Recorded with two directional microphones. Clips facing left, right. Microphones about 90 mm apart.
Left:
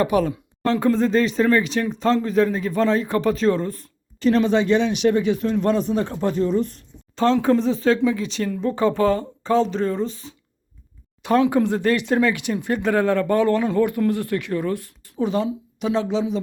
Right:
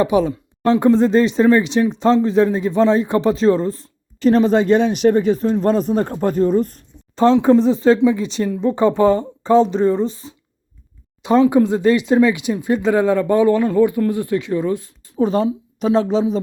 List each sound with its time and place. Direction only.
0.0 s speech: 5° right (ahead or behind)
0.7 s a man's voice: 30° right (ahead or behind)
11.3 s speech: 5° right (ahead or behind)
15.2 s a man's voice: 40° right (ahead or behind)